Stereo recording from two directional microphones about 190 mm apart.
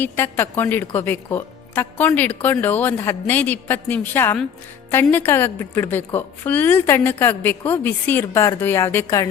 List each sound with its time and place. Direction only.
0.0 s a woman's voice: 10° left (ahead or behind)